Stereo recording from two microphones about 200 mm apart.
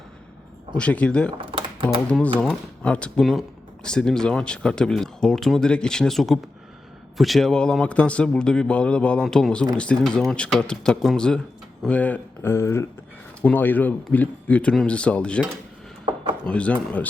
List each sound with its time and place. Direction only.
0.8 s speech: 5° left (ahead or behind)
1.4 s typing: 25° right (ahead or behind)
2.0 s speech: 5° left (ahead or behind)
16.5 s speech: 5° left (ahead or behind)